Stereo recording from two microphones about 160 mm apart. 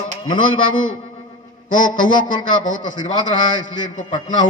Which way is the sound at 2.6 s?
55° left (ahead or behind).